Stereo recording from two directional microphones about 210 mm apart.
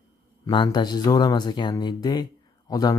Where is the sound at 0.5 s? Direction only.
20° left (ahead or behind).